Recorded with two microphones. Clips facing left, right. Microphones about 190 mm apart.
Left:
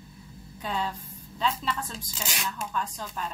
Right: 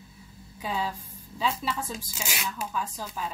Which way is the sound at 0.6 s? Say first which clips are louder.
Even; 5° right (ahead or behind).